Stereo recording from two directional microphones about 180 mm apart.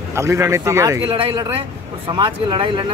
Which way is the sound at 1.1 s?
30° right (ahead or behind).